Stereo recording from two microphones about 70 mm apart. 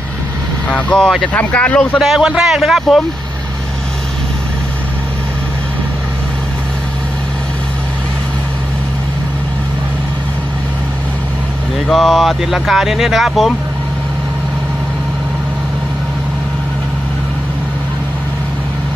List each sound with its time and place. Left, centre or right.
0.7 s speech: centre
2.0 s speech: centre
11.9 s speech: centre